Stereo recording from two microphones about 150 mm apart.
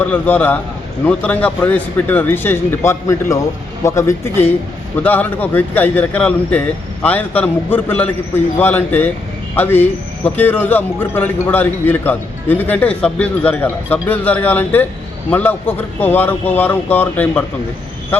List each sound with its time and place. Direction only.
0.0 s a man's voice: 10° left (ahead or behind)